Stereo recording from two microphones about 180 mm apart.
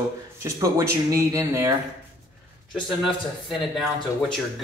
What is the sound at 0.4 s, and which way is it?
Speech, 15° right (ahead or behind).